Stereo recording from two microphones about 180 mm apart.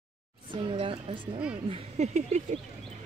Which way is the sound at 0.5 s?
30° right (ahead or behind).